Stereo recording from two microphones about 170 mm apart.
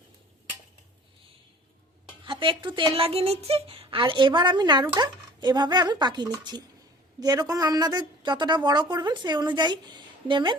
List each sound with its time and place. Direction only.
2.2 s a woman's voice: 30° right (ahead or behind)